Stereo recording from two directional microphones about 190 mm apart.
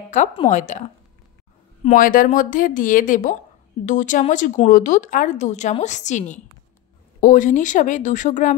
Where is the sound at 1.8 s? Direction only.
45° left (ahead or behind).